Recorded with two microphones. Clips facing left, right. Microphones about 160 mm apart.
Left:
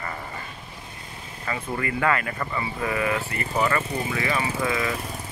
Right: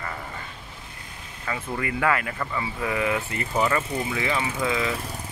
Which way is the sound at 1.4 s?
5° right (ahead or behind).